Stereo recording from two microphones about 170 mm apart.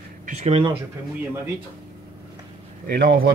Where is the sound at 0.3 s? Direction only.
45° right (ahead or behind).